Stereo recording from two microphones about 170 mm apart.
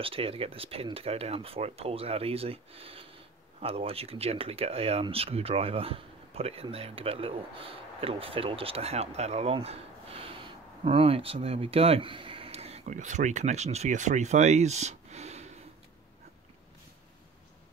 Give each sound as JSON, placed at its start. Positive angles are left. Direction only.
{"t": 0.0, "sound": "speech", "side_deg": -35}